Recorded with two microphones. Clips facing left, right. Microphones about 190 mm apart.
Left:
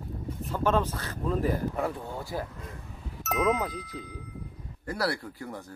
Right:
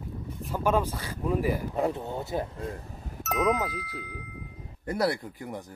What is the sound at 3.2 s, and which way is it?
Speech, centre (ahead or behind).